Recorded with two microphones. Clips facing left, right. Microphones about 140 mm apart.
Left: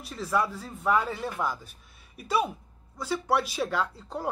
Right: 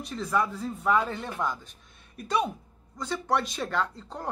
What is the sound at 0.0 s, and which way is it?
Speech, 5° left (ahead or behind).